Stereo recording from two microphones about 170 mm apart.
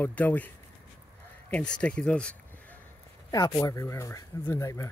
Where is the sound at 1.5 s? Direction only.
5° left (ahead or behind).